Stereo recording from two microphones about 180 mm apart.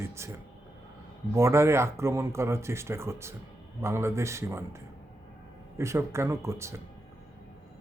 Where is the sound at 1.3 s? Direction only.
15° right (ahead or behind).